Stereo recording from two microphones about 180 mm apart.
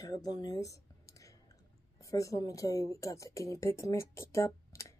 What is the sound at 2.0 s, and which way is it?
A woman's voice, 20° left (ahead or behind).